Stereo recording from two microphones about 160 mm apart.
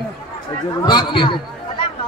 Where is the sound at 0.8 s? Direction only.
30° left (ahead or behind).